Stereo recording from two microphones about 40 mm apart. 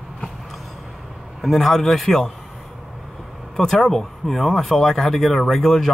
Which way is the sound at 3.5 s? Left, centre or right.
Centre.